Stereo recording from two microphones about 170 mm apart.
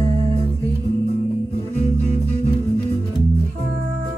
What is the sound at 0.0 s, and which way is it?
Music, 40° right (ahead or behind).